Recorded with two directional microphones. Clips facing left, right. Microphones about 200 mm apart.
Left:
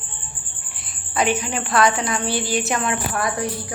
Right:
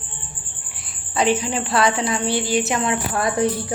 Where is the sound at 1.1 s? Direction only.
30° right (ahead or behind).